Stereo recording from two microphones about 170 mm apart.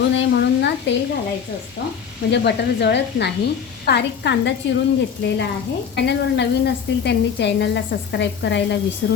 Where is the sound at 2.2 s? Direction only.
85° left.